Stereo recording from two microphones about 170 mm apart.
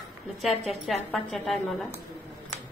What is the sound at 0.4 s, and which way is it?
A woman's voice, centre (ahead or behind).